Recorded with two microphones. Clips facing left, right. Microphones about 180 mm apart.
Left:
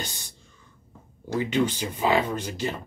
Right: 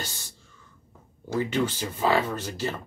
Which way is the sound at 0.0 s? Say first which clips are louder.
Left 1 dB; 15° left (ahead or behind).